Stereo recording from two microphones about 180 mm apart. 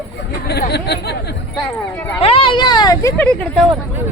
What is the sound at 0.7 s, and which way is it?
Chatter, 65° left (ahead or behind).